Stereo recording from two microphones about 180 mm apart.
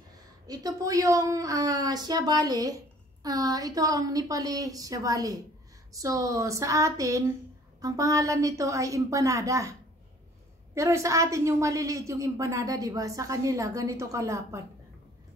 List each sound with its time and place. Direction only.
0.5 s a woman's voice: 20° right (ahead or behind)